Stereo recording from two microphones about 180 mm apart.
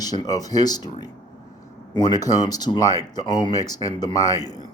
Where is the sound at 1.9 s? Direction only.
25° left (ahead or behind).